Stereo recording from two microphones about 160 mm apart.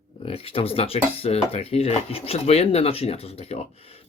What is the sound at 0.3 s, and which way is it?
Speech, 35° left (ahead or behind).